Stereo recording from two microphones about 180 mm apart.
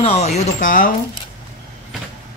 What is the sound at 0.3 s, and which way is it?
Speech, 50° left (ahead or behind).